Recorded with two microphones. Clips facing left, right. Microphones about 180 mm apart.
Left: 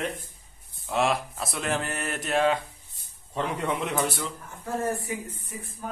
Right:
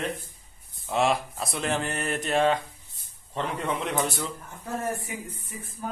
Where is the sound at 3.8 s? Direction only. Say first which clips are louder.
Even; centre (ahead or behind).